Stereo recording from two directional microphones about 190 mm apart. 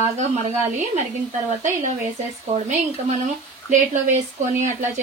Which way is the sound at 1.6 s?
40° right (ahead or behind).